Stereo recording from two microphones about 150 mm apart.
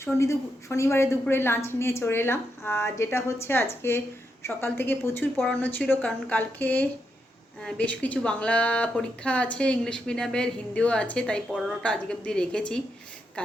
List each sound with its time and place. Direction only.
0.0 s speech: 20° left (ahead or behind)